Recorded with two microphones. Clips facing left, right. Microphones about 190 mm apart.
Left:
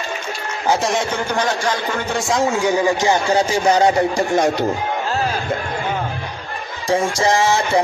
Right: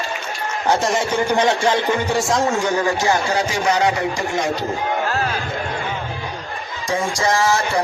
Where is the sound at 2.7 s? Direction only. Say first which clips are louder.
Left 2 dB; 15° left (ahead or behind).